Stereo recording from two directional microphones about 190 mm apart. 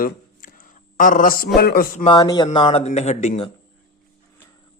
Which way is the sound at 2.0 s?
20° left (ahead or behind).